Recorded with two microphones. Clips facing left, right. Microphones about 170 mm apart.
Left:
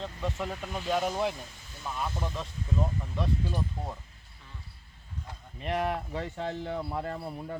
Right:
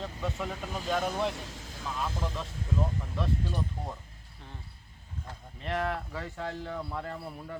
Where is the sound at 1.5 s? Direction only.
90° right.